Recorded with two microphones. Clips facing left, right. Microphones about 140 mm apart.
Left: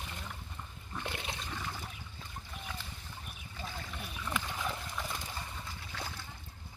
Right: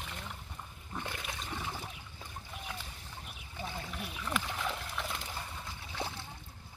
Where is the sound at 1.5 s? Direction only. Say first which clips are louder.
Right 1 dB; 15° right (ahead or behind).